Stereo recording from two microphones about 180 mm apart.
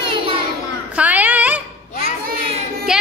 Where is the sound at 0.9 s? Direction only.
10° right (ahead or behind).